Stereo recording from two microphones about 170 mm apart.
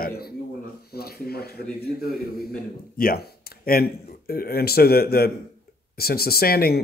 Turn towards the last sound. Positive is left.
turn(degrees=65)  # may be behind; listen again after turning